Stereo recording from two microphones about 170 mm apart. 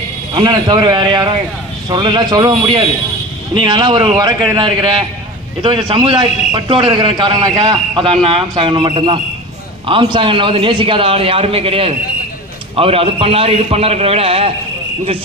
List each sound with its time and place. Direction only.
0.3 s a man's voice: 25° right (ahead or behind)